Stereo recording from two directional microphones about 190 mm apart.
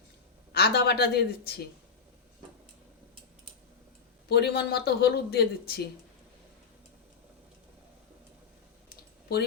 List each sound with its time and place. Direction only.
0.5 s speech: 55° left (ahead or behind)
4.3 s speech: 55° left (ahead or behind)